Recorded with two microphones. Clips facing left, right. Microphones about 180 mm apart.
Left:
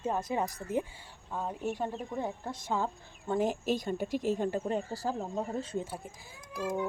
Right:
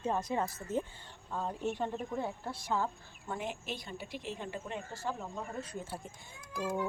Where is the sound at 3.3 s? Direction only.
40° left (ahead or behind).